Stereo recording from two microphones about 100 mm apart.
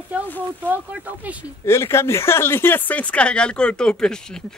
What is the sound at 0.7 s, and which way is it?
Speech, 15° right (ahead or behind).